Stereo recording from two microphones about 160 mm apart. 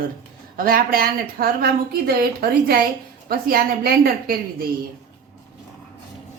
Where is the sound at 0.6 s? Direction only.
65° right (ahead or behind).